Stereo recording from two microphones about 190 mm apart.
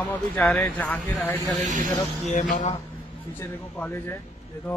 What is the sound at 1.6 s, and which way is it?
Speech, 40° right (ahead or behind).